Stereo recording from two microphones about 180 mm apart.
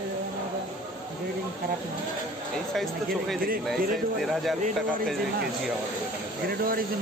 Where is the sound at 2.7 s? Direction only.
Centre (ahead or behind).